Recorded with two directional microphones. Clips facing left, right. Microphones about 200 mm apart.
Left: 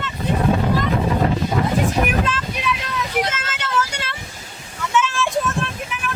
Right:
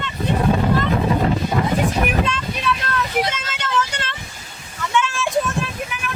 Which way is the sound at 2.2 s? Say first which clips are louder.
Right 1 dB; 5° left (ahead or behind).